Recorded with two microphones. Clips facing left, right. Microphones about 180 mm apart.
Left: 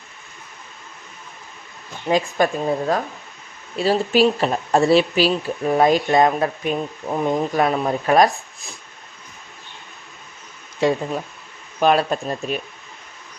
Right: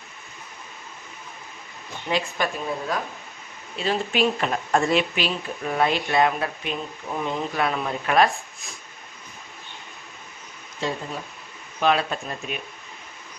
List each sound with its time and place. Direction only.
2.0 s speech: 45° left (ahead or behind)
11.8 s speech: 40° left (ahead or behind)